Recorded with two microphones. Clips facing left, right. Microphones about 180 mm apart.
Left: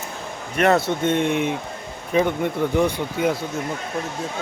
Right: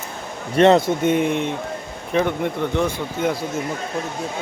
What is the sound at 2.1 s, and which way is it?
Speech, 5° left (ahead or behind).